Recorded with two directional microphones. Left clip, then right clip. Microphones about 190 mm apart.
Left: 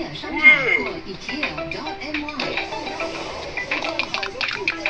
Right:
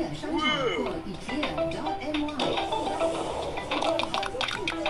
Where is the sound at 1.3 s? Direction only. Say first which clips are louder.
Left 2 dB; 30° right (ahead or behind).